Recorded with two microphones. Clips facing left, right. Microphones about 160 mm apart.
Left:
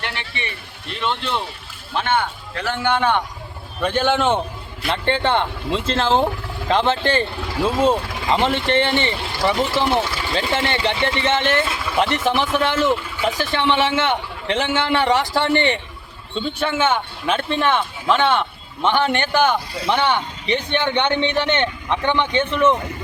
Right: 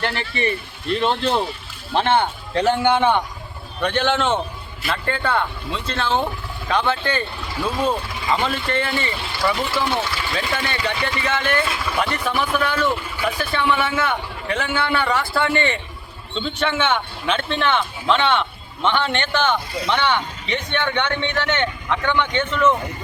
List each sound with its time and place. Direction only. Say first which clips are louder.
0.0 s a man's voice: right 7 dB; 40° right (ahead or behind)
3.8 s speech: left 1 dB; 5° left (ahead or behind)
4.9 s speech: left 3 dB; 25° left (ahead or behind)
16.3 s speech: left 1 dB; 5° left (ahead or behind)